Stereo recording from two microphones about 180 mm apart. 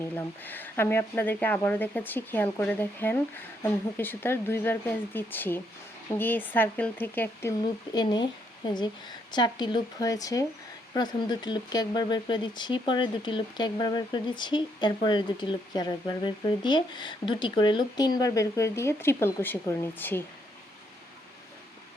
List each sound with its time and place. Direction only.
0.0 s speech: 10° left (ahead or behind)
7.9 s speech: 25° left (ahead or behind)